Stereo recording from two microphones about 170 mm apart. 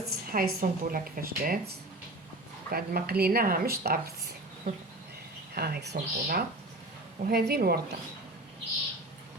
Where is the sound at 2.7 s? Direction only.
65° right (ahead or behind).